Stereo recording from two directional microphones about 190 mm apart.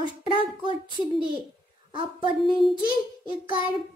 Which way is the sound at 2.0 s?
25° right (ahead or behind).